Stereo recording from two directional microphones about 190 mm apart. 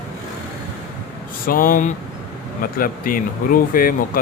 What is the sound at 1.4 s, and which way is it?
Speech, 50° left (ahead or behind).